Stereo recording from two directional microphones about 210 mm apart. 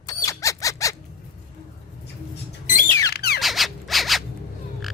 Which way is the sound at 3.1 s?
50° left (ahead or behind).